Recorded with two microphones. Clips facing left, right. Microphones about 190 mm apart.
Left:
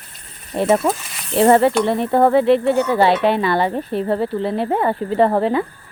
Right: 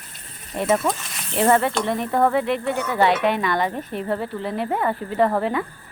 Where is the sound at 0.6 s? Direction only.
30° left (ahead or behind).